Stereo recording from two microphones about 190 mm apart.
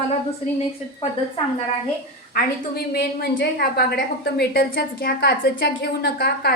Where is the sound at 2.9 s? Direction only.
60° left (ahead or behind).